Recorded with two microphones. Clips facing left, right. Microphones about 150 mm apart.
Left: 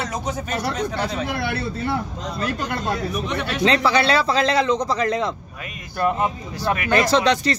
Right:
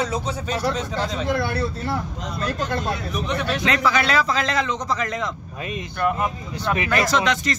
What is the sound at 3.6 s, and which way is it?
A man's voice, 30° left (ahead or behind).